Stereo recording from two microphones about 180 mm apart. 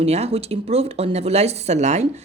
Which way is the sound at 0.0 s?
35° right (ahead or behind).